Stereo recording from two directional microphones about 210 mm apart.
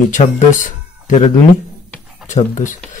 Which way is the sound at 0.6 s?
35° left (ahead or behind).